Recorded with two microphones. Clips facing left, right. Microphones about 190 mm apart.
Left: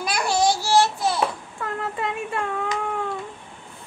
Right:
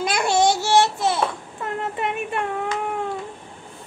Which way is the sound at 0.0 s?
25° right (ahead or behind).